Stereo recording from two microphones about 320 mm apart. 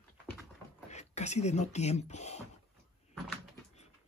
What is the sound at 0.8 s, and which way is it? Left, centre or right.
Speech, left.